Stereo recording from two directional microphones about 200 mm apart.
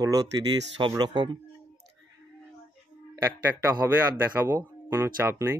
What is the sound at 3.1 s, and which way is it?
Speech, 10° right (ahead or behind).